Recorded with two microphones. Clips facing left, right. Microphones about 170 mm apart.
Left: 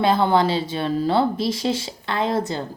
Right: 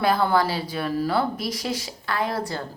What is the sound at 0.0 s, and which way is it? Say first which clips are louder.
Speech: left 3 dB; 25° left (ahead or behind).